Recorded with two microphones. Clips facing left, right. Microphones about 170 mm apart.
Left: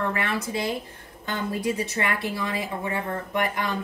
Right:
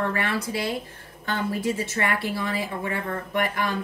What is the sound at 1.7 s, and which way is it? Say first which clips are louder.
A woman's voice: right 1 dB; 20° left (ahead or behind).